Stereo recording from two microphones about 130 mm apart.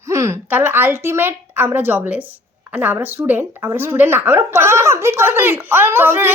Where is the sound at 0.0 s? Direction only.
20° right (ahead or behind).